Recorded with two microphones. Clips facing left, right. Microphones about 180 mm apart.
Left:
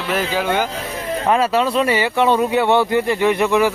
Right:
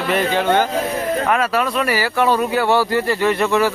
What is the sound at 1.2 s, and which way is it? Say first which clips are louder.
Speech: left 6 dB; 30° left (ahead or behind).